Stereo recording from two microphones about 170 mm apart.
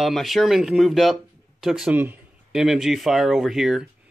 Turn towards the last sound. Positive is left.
turn(degrees=-5)  # may be behind; listen again after turning